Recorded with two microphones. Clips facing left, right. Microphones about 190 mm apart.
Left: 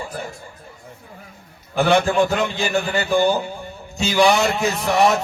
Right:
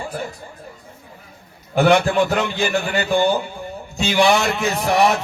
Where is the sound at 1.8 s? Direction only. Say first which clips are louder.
Right 1 dB; 35° left (ahead or behind).